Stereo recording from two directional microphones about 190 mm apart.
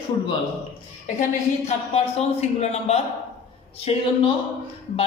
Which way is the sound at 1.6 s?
35° left (ahead or behind).